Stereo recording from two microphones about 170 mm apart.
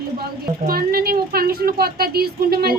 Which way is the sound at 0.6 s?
60° right (ahead or behind).